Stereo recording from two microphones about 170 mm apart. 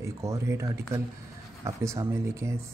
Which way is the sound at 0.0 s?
20° right (ahead or behind).